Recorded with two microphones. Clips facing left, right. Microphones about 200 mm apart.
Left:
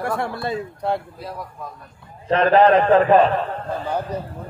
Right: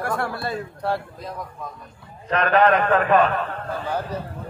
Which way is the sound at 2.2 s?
30° left (ahead or behind).